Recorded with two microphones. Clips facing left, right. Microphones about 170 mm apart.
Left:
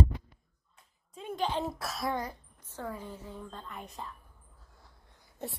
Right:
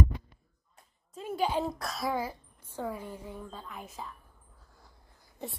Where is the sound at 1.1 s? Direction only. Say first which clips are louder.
Right 3 dB; 5° right (ahead or behind).